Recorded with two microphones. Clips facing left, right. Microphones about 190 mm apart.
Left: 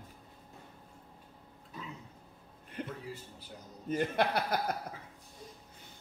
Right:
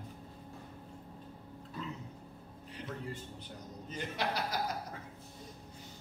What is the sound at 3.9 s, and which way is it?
Chuckle, 55° left (ahead or behind).